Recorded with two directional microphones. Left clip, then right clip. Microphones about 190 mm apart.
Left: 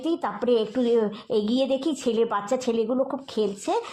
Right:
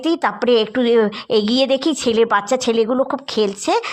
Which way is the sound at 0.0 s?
15° right (ahead or behind).